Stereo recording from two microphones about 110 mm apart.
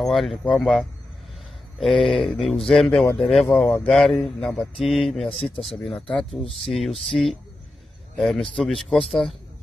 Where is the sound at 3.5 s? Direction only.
15° left (ahead or behind).